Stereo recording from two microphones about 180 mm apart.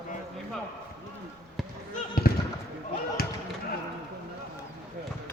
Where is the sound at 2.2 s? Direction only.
55° left (ahead or behind).